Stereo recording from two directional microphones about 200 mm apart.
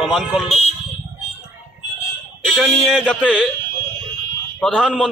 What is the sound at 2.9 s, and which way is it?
Speech, 5° right (ahead or behind).